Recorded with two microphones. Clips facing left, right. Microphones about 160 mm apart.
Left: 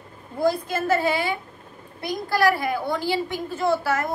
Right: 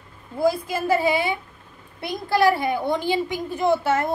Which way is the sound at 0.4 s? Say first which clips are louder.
Right 1 dB; 10° right (ahead or behind).